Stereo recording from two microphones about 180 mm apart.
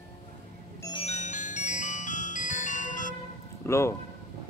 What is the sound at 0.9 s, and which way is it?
Music, 35° left (ahead or behind).